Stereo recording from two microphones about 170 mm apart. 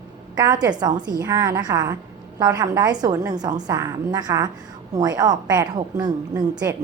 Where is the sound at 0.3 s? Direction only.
25° right (ahead or behind).